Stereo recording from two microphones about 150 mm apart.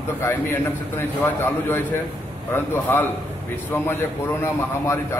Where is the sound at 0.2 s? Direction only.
15° left (ahead or behind).